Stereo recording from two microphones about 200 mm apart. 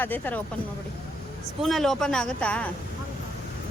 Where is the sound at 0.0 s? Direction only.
10° left (ahead or behind).